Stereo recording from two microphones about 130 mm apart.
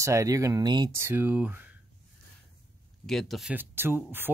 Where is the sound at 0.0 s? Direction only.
25° right (ahead or behind).